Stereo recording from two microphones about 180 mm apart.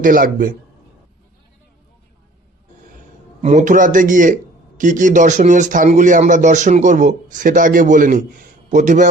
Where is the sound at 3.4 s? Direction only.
40° right (ahead or behind).